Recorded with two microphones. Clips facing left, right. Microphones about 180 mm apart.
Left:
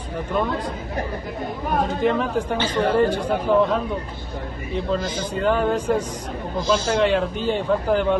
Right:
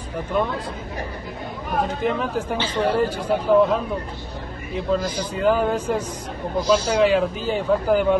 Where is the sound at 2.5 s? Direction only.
50° left (ahead or behind).